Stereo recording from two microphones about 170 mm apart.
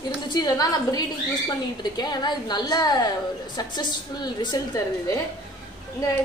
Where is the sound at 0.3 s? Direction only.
25° left (ahead or behind).